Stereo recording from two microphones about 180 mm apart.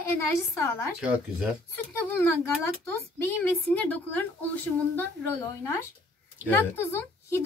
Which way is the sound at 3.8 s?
10° left (ahead or behind).